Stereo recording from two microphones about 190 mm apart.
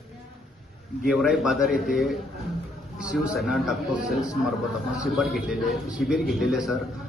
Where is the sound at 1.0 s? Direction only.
5° right (ahead or behind).